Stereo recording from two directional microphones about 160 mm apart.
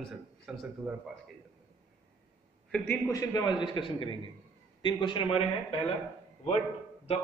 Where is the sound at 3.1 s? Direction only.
20° left (ahead or behind).